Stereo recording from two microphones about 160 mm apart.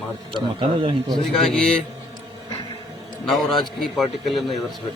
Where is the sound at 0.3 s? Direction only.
35° right (ahead or behind).